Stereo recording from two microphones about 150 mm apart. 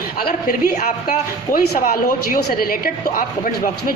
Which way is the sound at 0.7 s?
65° left (ahead or behind).